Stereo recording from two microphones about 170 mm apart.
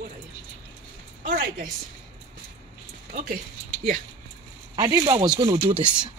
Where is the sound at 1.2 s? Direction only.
55° right (ahead or behind).